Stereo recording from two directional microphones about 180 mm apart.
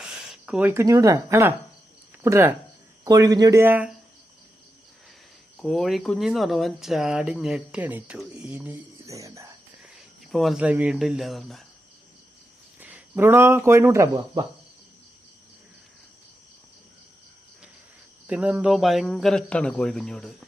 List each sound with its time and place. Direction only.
0.0 s speech: 5° right (ahead or behind)
5.5 s speech: centre (ahead or behind); by 9.6 s 15° right (ahead or behind)
10.3 s speech: centre (ahead or behind)
12.8 s speech: 10° right (ahead or behind)
18.3 s speech: 5° right (ahead or behind)